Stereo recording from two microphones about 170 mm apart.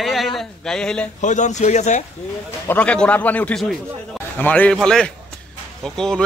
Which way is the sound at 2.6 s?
10° left (ahead or behind).